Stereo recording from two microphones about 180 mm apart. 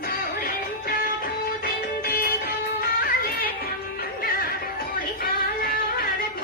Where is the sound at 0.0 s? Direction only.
55° left (ahead or behind).